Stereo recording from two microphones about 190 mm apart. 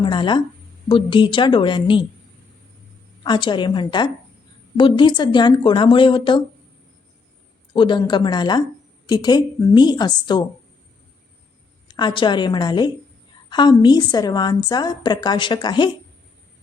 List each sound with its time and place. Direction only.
0.0 s a woman's voice: 25° left (ahead or behind)
3.2 s a woman's voice: 25° left (ahead or behind)
7.7 s a woman's voice: 25° left (ahead or behind)
11.9 s a woman's voice: 25° left (ahead or behind)